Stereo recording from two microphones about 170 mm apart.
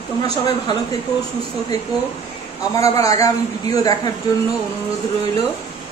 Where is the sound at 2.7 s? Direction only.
20° left (ahead or behind).